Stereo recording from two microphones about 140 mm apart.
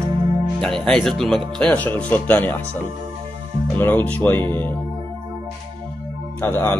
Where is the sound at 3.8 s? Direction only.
15° left (ahead or behind).